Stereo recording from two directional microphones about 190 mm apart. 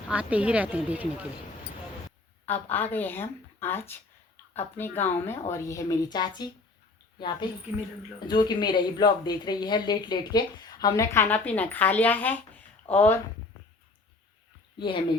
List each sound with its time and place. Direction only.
0.1 s a woman's voice: 5° right (ahead or behind)
2.5 s speech: 10° left (ahead or behind)
14.8 s speech: 25° left (ahead or behind)